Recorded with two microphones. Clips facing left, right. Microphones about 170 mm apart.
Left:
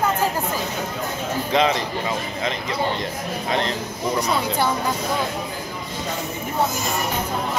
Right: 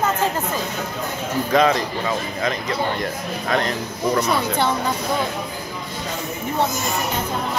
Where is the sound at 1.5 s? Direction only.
20° left (ahead or behind).